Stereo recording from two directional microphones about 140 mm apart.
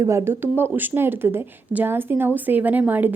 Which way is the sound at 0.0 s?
20° right (ahead or behind).